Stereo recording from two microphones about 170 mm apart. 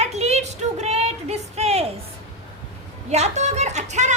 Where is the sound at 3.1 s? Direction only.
40° right (ahead or behind).